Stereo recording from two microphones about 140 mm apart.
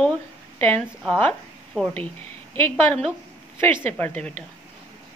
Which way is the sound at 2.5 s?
15° left (ahead or behind).